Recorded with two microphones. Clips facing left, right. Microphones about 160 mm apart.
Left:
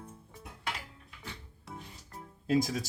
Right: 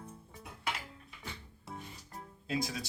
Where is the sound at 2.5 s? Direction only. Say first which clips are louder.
Left 7 dB; 45° left (ahead or behind).